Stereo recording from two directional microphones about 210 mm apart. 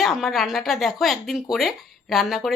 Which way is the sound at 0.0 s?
Centre (ahead or behind).